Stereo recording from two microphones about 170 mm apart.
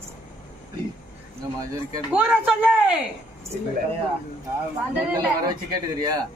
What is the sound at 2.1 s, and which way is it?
Speech, 5° right (ahead or behind).